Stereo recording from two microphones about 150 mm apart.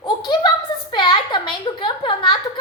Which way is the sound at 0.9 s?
30° left (ahead or behind).